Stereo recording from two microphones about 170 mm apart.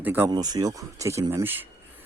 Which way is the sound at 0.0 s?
10° right (ahead or behind).